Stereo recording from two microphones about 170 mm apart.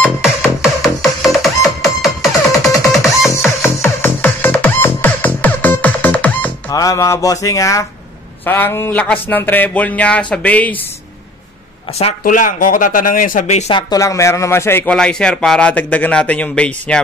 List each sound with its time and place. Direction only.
0.2 s music: centre (ahead or behind)
3.6 s music: 15° left (ahead or behind)
6.7 s speech: 20° left (ahead or behind)
12.2 s speech: 50° left (ahead or behind)
13.7 s speech: 20° left (ahead or behind)